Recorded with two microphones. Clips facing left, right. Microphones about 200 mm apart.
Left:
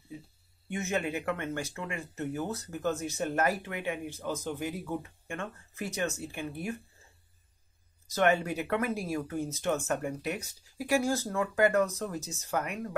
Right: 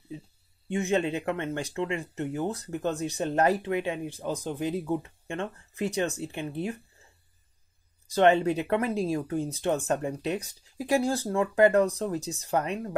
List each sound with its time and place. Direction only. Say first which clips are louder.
0.7 s speech: right 6 dB; 30° right (ahead or behind)
3.6 s speech: right 6 dB; 20° right (ahead or behind)
8.2 s speech: right 5 dB; 30° right (ahead or behind)
10.2 s speech: right 5 dB; 20° right (ahead or behind)